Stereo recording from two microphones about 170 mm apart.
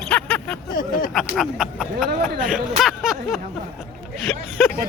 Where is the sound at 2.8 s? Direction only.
Centre (ahead or behind).